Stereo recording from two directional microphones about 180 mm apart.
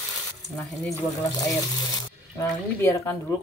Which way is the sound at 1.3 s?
20° left (ahead or behind).